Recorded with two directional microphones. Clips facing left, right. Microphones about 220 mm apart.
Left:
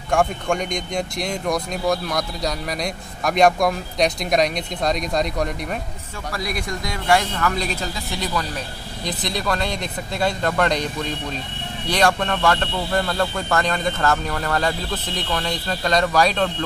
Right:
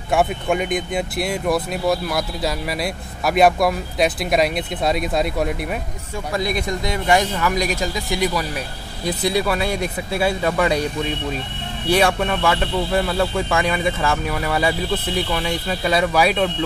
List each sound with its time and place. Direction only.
0.1 s speech: 5° right (ahead or behind)
6.3 s speech: 20° right (ahead or behind)